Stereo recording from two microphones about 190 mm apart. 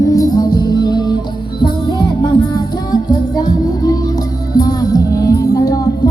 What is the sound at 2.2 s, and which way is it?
Music, 20° left (ahead or behind).